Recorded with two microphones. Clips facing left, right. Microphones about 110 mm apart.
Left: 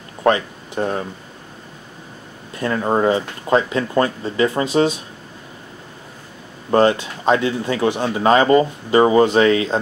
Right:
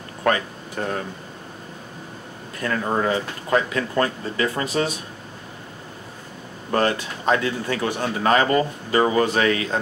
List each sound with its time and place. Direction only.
0.2 s a sound: 25° left (ahead or behind)
2.6 s speech: 25° left (ahead or behind)
6.7 s speech: 25° left (ahead or behind)